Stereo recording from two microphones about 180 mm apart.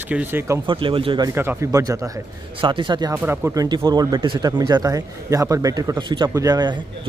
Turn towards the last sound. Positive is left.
turn(degrees=-25)  # may be behind; listen again after turning